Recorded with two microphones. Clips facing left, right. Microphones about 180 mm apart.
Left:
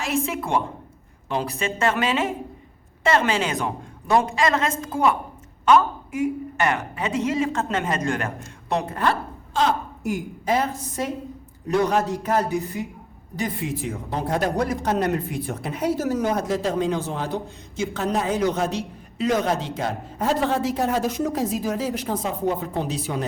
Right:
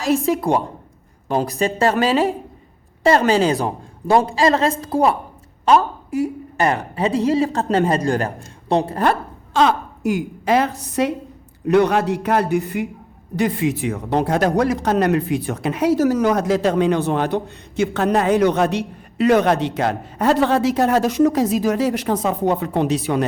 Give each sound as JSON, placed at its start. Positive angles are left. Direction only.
{"t": 0.0, "sound": "a woman's voice", "side_deg": -35}
{"t": 9.5, "sound": "a woman's voice", "side_deg": -80}